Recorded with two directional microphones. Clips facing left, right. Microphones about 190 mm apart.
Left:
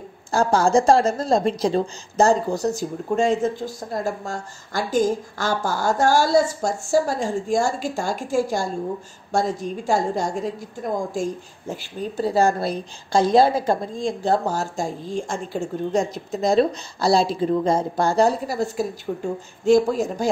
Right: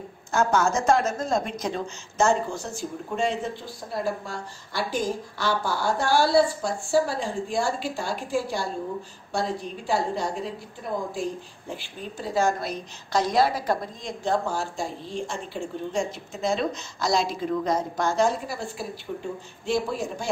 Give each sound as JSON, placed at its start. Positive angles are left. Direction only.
{"t": 0.3, "sound": "speech", "side_deg": 30}